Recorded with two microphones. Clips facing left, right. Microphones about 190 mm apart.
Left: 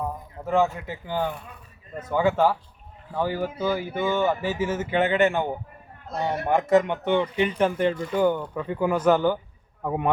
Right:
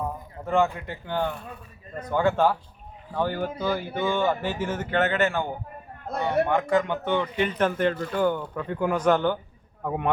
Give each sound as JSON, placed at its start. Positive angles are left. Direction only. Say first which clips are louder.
{"t": 0.4, "sound": "a man's voice", "louder": "left 1 dB", "side_deg": 5}
{"t": 6.1, "sound": "a man's voice", "louder": "right 2 dB", "side_deg": -60}
{"t": 6.6, "sound": "a man's voice", "louder": "left 3 dB", "side_deg": 25}